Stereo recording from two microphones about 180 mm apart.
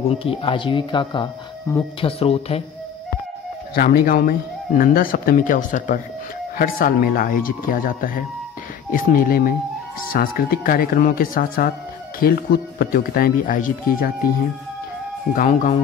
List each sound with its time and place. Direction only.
0.1 s speech: 30° left (ahead or behind)
3.7 s speech: 60° left (ahead or behind)
15.3 s speech: 45° left (ahead or behind)